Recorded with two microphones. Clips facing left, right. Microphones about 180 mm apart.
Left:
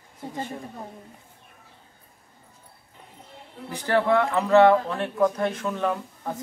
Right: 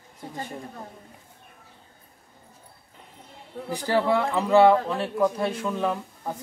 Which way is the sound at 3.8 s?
10° right (ahead or behind).